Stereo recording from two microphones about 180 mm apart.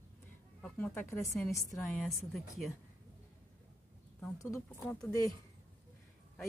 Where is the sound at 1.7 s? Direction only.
Centre (ahead or behind).